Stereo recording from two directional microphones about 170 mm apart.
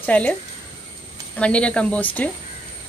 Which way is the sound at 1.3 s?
5° left (ahead or behind).